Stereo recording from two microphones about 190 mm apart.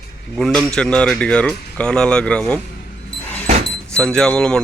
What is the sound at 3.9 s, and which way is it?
Speech, 5° left (ahead or behind).